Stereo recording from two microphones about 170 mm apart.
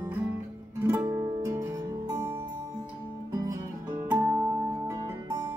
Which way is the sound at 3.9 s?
10° right (ahead or behind).